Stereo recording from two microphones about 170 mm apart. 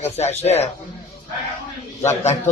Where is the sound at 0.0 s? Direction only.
40° left (ahead or behind).